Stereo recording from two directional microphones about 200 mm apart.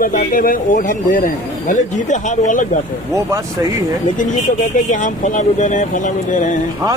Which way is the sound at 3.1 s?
15° right (ahead or behind).